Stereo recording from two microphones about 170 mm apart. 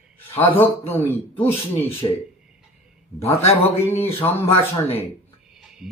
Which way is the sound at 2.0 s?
30° left (ahead or behind).